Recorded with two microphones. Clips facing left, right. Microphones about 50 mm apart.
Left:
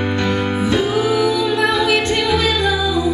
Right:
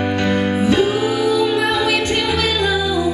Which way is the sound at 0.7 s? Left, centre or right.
Right.